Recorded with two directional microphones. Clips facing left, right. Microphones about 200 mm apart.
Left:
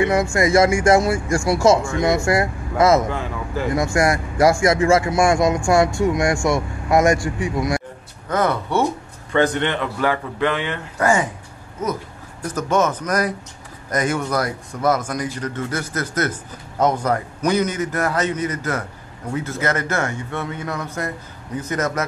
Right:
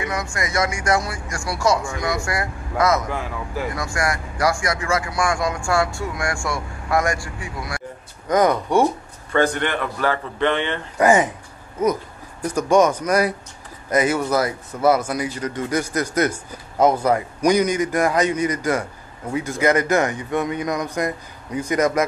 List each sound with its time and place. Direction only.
0.0 s speech: 25° left (ahead or behind)
3.1 s speech: 5° right (ahead or behind)
3.7 s speech: 25° left (ahead or behind)
8.3 s speech: 15° right (ahead or behind)
9.3 s speech: 20° left (ahead or behind)
10.4 s speech: 5° left (ahead or behind)
11.0 s speech: 20° right (ahead or behind)
12.4 s speech: 10° right (ahead or behind)